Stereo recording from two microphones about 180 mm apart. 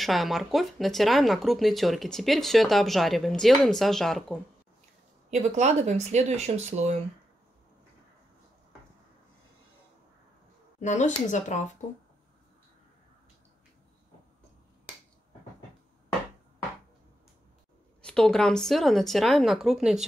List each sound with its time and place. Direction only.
0.0 s speech: centre (ahead or behind)
5.3 s speech: 40° right (ahead or behind)
10.8 s speech: 40° left (ahead or behind)
18.0 s speech: 5° left (ahead or behind)